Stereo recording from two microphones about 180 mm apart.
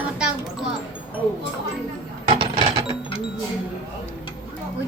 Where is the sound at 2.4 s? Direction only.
30° right (ahead or behind).